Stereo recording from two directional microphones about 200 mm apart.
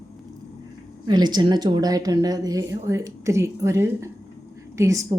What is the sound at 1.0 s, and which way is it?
A woman's voice, 20° right (ahead or behind).